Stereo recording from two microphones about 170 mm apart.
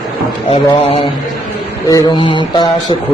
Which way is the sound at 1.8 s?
20° left (ahead or behind).